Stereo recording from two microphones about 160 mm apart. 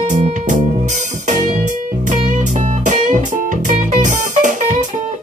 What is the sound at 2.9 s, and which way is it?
Music, 50° right (ahead or behind).